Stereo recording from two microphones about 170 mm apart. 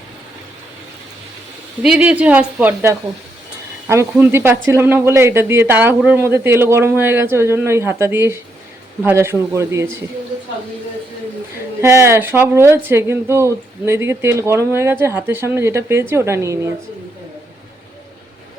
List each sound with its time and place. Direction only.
1.8 s speech: 5° right (ahead or behind)
11.8 s speech: 15° right (ahead or behind)